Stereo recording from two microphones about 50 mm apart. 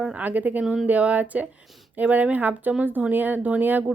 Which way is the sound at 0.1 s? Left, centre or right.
Right.